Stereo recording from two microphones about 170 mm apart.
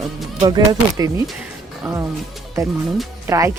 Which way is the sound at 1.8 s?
Centre (ahead or behind).